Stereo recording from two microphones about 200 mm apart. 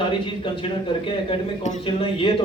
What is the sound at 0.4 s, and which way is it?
Speech, 25° left (ahead or behind).